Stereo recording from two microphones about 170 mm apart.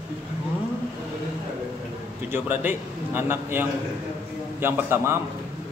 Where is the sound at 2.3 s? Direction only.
10° right (ahead or behind).